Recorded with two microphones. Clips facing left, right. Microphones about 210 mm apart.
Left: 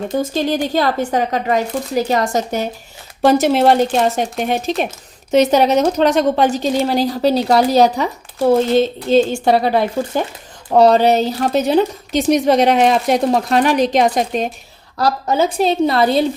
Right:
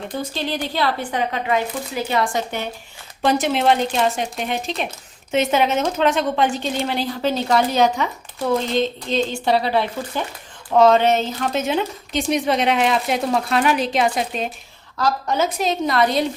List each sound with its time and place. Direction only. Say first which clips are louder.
0.1 s a woman's voice: left 8 dB; 45° left (ahead or behind)
9.0 s a woman's voice: left 7 dB; 45° left (ahead or behind); by 16.2 s 30° left (ahead or behind)